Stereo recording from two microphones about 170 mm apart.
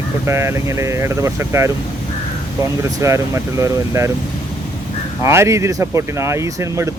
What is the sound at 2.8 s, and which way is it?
Speech, 15° right (ahead or behind).